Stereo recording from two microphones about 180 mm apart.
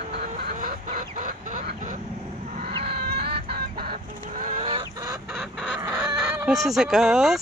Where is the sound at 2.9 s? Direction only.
60° right (ahead or behind).